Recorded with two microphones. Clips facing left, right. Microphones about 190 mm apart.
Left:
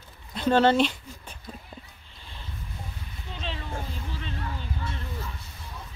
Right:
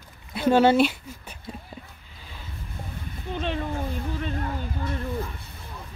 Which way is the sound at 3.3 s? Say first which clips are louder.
Right 7 dB; 55° right (ahead or behind).